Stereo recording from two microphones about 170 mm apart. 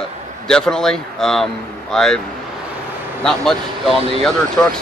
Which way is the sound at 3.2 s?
5° left (ahead or behind).